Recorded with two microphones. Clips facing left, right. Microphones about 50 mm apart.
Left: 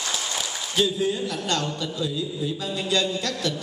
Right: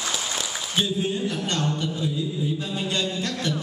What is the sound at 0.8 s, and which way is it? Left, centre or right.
A man's voice, left.